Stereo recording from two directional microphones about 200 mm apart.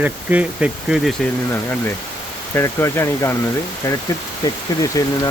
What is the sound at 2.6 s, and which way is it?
Speech, 15° left (ahead or behind).